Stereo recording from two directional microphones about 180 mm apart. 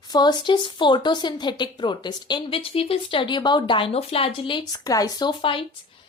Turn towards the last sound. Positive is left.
turn(degrees=25)  # may be behind; listen again after turning